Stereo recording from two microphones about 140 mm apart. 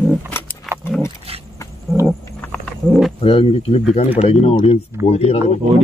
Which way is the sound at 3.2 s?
45° left (ahead or behind).